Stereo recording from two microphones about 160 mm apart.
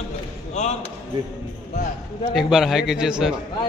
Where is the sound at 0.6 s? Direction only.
45° left (ahead or behind).